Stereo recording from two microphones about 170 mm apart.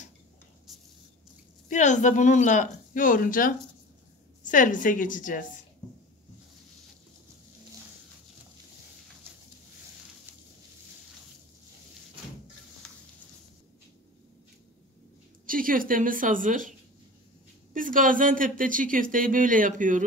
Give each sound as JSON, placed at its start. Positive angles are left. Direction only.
{"t": 0.7, "sound": "a sound", "side_deg": 0}
{"t": 1.7, "sound": "speech", "side_deg": 45}
{"t": 15.4, "sound": "speech", "side_deg": -55}
{"t": 17.7, "sound": "speech", "side_deg": -50}